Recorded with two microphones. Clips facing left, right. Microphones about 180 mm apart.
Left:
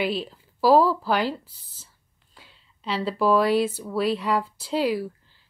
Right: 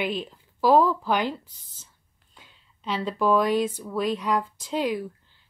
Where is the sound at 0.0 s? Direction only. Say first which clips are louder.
Left 2 dB; 5° left (ahead or behind).